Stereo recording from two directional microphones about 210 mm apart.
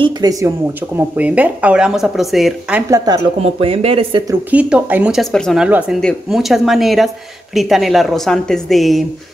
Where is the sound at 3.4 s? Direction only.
25° right (ahead or behind).